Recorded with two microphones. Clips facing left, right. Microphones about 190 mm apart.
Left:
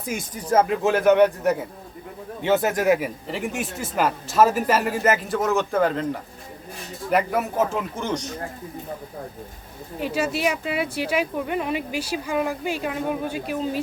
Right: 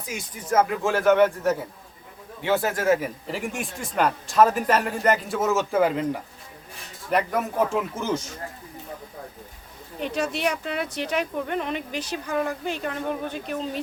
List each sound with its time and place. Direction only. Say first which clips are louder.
0.0 s speech: left 5 dB; 50° left (ahead or behind)
0.4 s a man's voice: left 2 dB; 25° left (ahead or behind)
3.2 s a man's voice: left 2 dB; centre (ahead or behind)
7.1 s a man's voice: left 2 dB; 5° left (ahead or behind)
10.0 s speech: left 2 dB; 5° left (ahead or behind)